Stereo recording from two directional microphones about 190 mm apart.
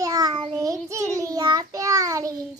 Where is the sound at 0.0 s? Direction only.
20° right (ahead or behind).